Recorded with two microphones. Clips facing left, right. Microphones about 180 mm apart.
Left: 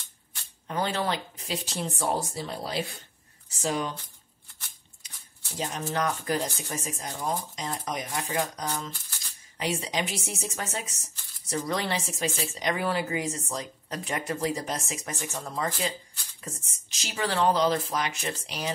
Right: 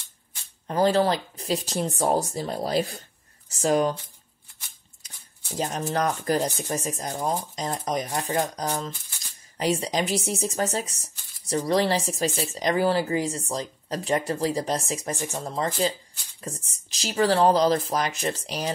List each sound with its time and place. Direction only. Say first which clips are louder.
0.7 s speech: right 8 dB; 35° right (ahead or behind)
5.6 s speech: right 4 dB; 40° right (ahead or behind)